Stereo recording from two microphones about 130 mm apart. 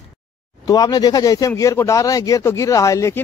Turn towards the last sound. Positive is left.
turn(degrees=25)  # may be behind; listen again after turning